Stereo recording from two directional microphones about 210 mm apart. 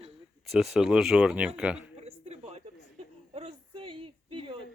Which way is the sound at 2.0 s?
30° right (ahead or behind).